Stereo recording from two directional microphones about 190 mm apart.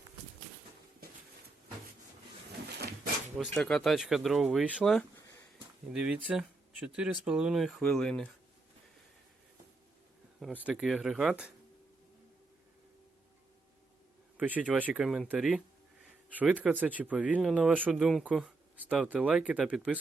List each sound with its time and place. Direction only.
3.3 s speech: 5° left (ahead or behind)
10.6 s speech: 5° right (ahead or behind)
14.3 s speech: 10° right (ahead or behind)